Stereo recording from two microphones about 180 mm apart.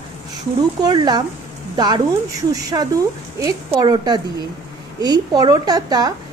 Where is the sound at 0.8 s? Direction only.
25° right (ahead or behind).